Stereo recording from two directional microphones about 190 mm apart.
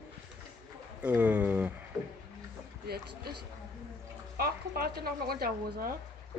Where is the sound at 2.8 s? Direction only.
55° right (ahead or behind).